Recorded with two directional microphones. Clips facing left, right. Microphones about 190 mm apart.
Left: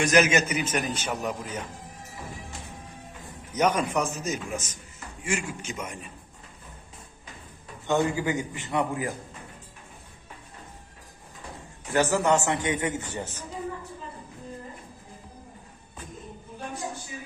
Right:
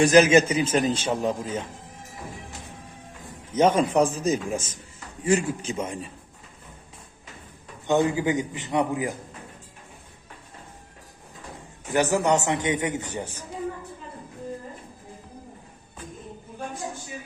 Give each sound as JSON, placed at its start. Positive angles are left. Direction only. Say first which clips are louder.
{"t": 0.0, "sound": "a man's voice", "louder": "right 6 dB", "side_deg": -30}
{"t": 3.5, "sound": "a man's voice", "louder": "right 5 dB", "side_deg": -30}
{"t": 7.9, "sound": "a man's voice", "louder": "right 3 dB", "side_deg": -20}
{"t": 11.9, "sound": "a man's voice", "louder": "right 1 dB", "side_deg": -15}